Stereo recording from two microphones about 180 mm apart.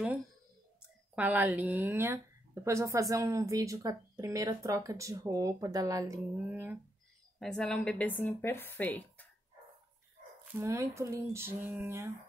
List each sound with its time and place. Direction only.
1.1 s a woman's voice: 10° right (ahead or behind)
7.3 s speech: centre (ahead or behind)
10.6 s a woman's voice: 15° right (ahead or behind)